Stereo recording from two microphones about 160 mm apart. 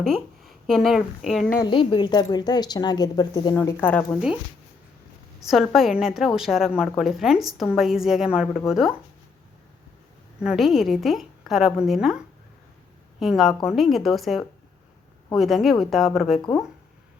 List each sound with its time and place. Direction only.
0.0 s speech: centre (ahead or behind)
1.6 s a woman's voice: 30° left (ahead or behind)
3.6 s speech: 15° left (ahead or behind)
5.5 s a woman's voice: centre (ahead or behind)
10.4 s a woman's voice: 5° right (ahead or behind)
13.1 s a woman's voice: centre (ahead or behind)
16.4 s a woman's voice: 30° left (ahead or behind)